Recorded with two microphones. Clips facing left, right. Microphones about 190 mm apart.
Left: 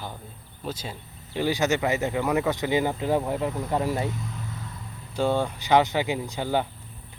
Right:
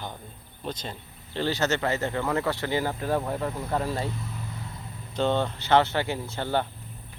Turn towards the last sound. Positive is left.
turn(degrees=10)  # may be behind; listen again after turning